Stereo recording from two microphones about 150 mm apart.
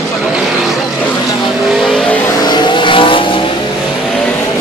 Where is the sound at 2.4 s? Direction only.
30° left (ahead or behind).